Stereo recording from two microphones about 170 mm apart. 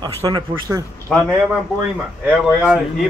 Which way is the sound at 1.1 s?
5° left (ahead or behind).